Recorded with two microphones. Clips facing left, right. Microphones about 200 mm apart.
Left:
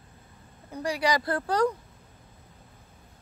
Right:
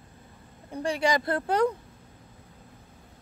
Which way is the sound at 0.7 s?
25° right (ahead or behind).